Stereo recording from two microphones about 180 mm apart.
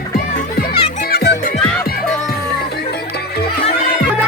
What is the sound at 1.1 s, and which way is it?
Music, 65° left (ahead or behind).